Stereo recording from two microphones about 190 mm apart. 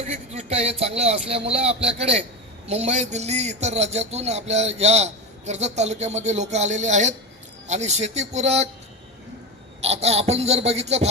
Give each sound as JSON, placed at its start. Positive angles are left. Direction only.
{"t": 0.1, "sound": "a man's voice", "side_deg": -35}
{"t": 9.8, "sound": "speech", "side_deg": -35}